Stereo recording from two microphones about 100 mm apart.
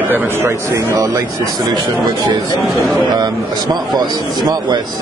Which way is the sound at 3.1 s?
45° right (ahead or behind).